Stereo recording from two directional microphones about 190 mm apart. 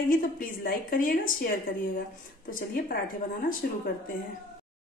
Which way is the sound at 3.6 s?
50° left (ahead or behind).